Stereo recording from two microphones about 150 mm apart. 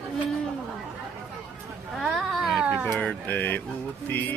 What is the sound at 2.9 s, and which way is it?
Speech, 10° left (ahead or behind).